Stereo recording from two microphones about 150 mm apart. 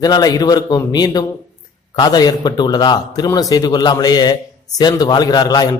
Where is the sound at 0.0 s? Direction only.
25° left (ahead or behind).